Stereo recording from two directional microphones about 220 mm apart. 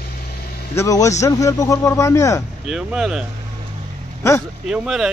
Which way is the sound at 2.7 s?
Centre (ahead or behind).